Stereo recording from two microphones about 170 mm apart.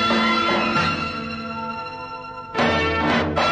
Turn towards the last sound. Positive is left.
turn(degrees=0)  # may be behind; listen again after turning